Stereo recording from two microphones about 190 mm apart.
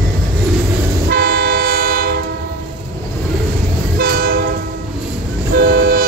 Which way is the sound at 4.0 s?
50° right (ahead or behind).